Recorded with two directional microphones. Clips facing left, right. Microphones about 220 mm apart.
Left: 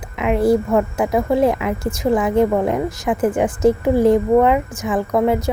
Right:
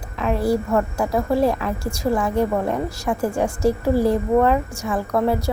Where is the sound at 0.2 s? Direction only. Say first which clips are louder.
Left 5 dB; 20° left (ahead or behind).